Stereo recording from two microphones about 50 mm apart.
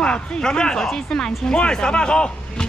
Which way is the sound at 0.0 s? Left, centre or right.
Centre.